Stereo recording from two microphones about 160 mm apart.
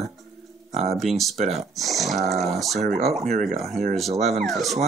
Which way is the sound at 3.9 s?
Centre (ahead or behind).